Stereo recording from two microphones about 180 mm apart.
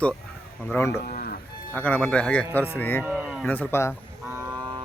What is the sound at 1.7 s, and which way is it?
A man's voice, 5° left (ahead or behind).